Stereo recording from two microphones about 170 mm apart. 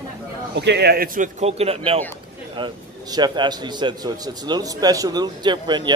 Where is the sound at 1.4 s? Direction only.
35° right (ahead or behind).